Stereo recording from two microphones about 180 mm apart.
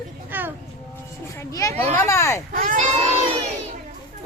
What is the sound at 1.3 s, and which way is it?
Speech, 20° left (ahead or behind).